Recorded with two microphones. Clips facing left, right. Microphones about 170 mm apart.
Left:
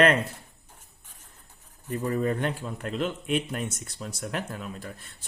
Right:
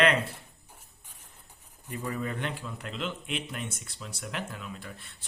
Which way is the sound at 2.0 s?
40° left (ahead or behind).